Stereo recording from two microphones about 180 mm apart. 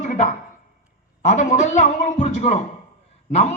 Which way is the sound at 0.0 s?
45° left (ahead or behind).